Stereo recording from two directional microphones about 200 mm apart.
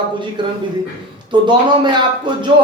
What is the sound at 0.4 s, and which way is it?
A man's voice, 25° right (ahead or behind).